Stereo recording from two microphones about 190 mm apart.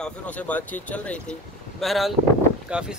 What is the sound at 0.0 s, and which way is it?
Speech, 10° left (ahead or behind).